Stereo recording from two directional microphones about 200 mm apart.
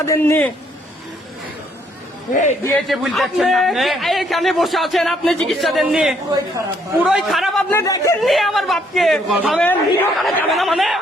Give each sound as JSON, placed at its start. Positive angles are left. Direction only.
{"t": 0.0, "sound": "a man's voice", "side_deg": 15}
{"t": 2.3, "sound": "a man's voice", "side_deg": 40}
{"t": 2.7, "sound": "a man's voice", "side_deg": 0}
{"t": 7.7, "sound": "a man's voice", "side_deg": 15}
{"t": 8.2, "sound": "a man's voice", "side_deg": 0}